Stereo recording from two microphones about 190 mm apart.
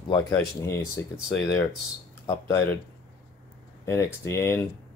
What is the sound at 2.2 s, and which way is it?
Speech, 15° left (ahead or behind).